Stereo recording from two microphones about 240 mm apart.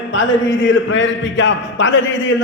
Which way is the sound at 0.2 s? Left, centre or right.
Left.